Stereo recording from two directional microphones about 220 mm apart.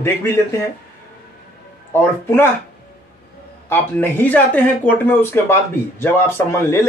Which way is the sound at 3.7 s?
10° left (ahead or behind).